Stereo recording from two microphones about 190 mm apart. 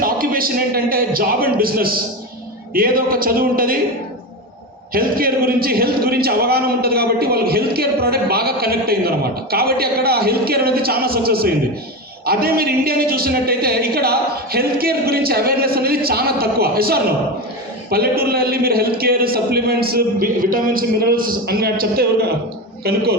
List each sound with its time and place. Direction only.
0.0 s a man's voice: 50° right (ahead or behind)
4.9 s a man's voice: 50° right (ahead or behind)